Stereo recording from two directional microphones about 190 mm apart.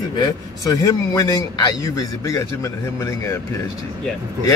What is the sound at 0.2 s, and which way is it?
Speech, 20° left (ahead or behind).